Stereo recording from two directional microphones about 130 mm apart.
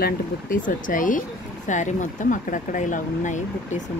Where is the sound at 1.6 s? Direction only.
70° left (ahead or behind).